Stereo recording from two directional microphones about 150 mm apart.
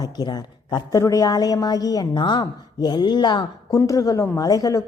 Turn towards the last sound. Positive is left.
turn(degrees=25)  # may be behind; listen again after turning